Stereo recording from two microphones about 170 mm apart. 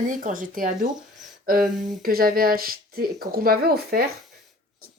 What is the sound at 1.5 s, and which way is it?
Speech, 55° right (ahead or behind).